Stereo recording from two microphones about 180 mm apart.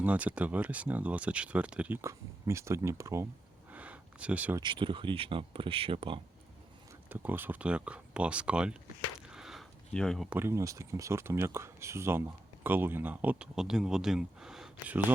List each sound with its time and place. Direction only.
0.0 s speech: 10° right (ahead or behind)
3.7 s a sound: 10° right (ahead or behind)
4.6 s speech: 30° right (ahead or behind)
7.1 s speech: 10° right (ahead or behind)
9.3 s a sound: centre (ahead or behind)
10.2 s speech: 10° right (ahead or behind)